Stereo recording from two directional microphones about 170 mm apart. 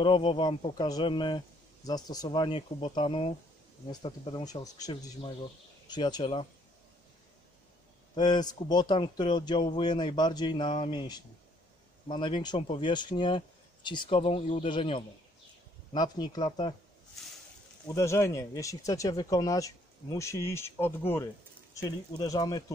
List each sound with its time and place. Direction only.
0.0 s speech: 30° left (ahead or behind)
8.1 s speech: 25° left (ahead or behind)
17.8 s speech: 15° left (ahead or behind)